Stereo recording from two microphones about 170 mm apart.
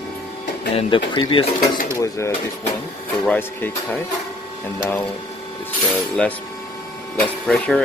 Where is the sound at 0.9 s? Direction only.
30° left (ahead or behind).